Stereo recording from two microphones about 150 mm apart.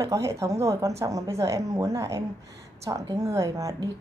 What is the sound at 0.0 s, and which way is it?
A woman's voice, 20° right (ahead or behind).